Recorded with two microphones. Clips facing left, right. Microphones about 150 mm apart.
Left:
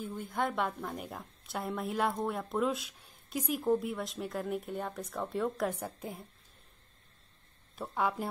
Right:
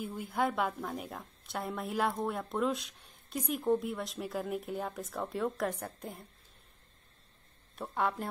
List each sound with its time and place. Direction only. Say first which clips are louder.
0.0 s a woman's voice: right 1 dB; 5° right (ahead or behind)
7.7 s a woman's voice: even; centre (ahead or behind)